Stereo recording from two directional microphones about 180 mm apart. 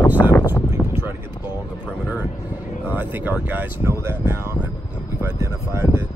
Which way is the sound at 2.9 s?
10° right (ahead or behind).